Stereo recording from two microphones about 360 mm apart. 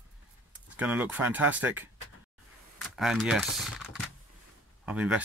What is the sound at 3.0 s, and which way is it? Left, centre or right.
Speech, centre.